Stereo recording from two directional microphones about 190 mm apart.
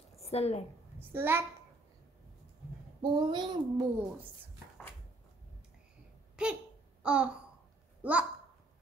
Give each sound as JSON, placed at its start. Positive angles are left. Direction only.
{"t": 0.2, "sound": "a woman's voice", "side_deg": 35}
{"t": 0.9, "sound": "a child's voice", "side_deg": -10}
{"t": 3.0, "sound": "child singing", "side_deg": -25}
{"t": 6.4, "sound": "a sound", "side_deg": -5}
{"t": 7.0, "sound": "babbling", "side_deg": -5}
{"t": 8.0, "sound": "a child's voice", "side_deg": -5}